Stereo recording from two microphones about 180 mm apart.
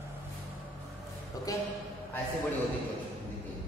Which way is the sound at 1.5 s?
20° left (ahead or behind).